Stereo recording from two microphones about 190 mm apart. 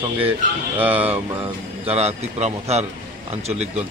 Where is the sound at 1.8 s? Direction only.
35° right (ahead or behind).